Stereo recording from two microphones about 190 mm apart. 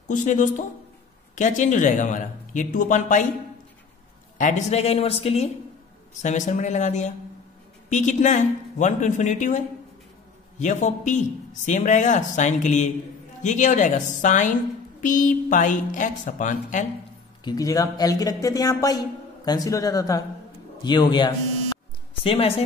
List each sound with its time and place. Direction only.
0.1 s speech: 40° left (ahead or behind)
4.4 s a woman's voice: 40° left (ahead or behind)
17.5 s a man's voice: 20° left (ahead or behind)